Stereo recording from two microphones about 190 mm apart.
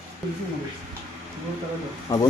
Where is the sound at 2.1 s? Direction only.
20° left (ahead or behind).